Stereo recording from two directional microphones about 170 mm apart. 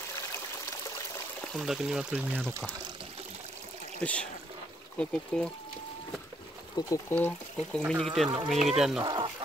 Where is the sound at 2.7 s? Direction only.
25° right (ahead or behind).